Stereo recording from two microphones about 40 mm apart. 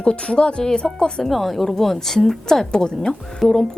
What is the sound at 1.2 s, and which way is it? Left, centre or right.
A woman's voice, centre.